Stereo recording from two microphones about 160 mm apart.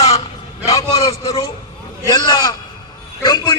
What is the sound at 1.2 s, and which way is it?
Speech, 35° left (ahead or behind).